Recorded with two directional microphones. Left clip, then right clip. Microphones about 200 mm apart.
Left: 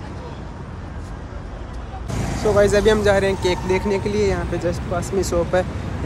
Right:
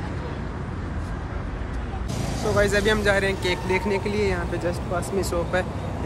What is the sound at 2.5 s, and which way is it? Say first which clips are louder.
Speech: left 6 dB; 5° right (ahead or behind).